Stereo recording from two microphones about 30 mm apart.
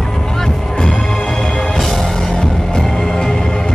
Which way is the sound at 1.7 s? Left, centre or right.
Centre.